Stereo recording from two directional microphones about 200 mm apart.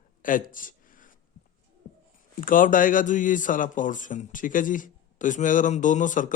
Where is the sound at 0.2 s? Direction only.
45° left (ahead or behind).